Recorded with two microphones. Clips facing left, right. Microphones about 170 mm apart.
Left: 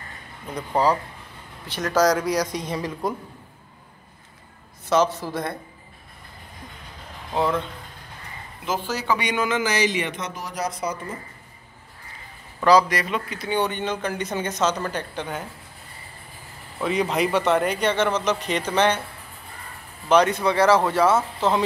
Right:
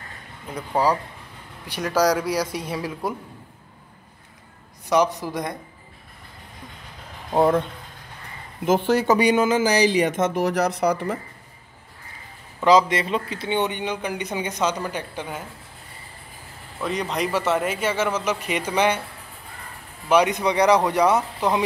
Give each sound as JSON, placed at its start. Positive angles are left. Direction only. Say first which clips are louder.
{"t": 0.6, "sound": "speech", "louder": "even", "side_deg": -10}
{"t": 4.8, "sound": "speech", "louder": "even", "side_deg": -15}
{"t": 7.3, "sound": "speech", "louder": "right 5 dB", "side_deg": -50}
{"t": 8.6, "sound": "speech", "louder": "right 7 dB", "side_deg": -55}
{"t": 12.6, "sound": "speech", "louder": "right 1 dB", "side_deg": -20}
{"t": 16.8, "sound": "speech", "louder": "left 3 dB", "side_deg": 0}
{"t": 20.1, "sound": "speech", "louder": "even", "side_deg": -15}